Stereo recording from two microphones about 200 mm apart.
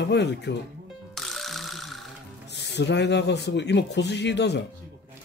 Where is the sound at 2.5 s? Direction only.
60° left (ahead or behind).